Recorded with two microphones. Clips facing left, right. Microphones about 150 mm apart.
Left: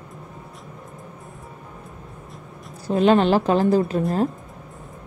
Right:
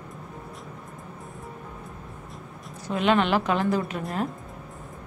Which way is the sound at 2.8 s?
35° left (ahead or behind).